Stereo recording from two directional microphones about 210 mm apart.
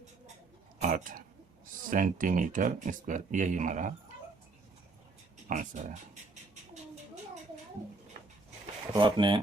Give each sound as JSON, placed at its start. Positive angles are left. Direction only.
{"t": 0.8, "sound": "a sound", "side_deg": -40}
{"t": 1.9, "sound": "speech", "side_deg": -40}
{"t": 5.5, "sound": "speech", "side_deg": -35}
{"t": 8.9, "sound": "speech", "side_deg": -20}